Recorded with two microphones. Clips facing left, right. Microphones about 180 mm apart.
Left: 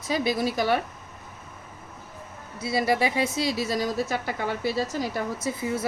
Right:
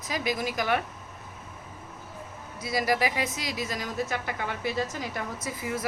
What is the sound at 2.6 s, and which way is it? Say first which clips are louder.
A woman's voice: left 3 dB; 30° left (ahead or behind).